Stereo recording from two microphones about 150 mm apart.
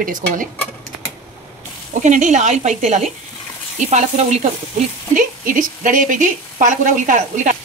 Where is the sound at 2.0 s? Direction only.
55° right (ahead or behind).